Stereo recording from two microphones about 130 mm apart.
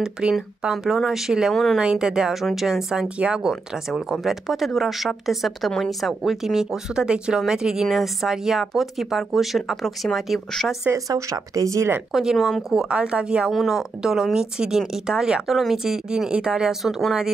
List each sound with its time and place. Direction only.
0.0 s speech: 5° right (ahead or behind)
10.9 s speech: 25° right (ahead or behind)
12.1 s speech: 5° right (ahead or behind)